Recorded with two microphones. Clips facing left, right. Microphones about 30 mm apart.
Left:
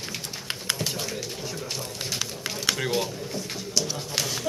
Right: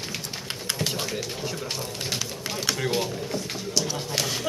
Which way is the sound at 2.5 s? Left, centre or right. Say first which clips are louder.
Even; centre.